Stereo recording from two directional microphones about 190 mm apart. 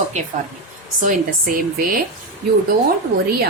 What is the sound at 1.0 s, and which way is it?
Speech, 45° right (ahead or behind).